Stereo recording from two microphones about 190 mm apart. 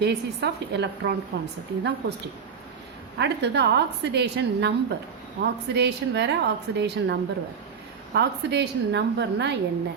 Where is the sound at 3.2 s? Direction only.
60° right (ahead or behind).